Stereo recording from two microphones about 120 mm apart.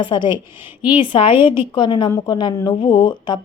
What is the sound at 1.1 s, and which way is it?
A woman's voice, 45° left (ahead or behind).